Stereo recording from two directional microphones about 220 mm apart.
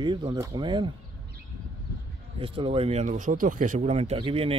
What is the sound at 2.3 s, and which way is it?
Speech, 25° right (ahead or behind).